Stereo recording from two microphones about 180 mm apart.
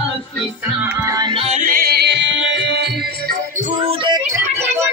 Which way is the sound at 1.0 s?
25° right (ahead or behind).